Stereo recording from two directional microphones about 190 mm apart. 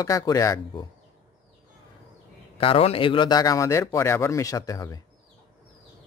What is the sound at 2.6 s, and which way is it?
A man's voice, 30° left (ahead or behind).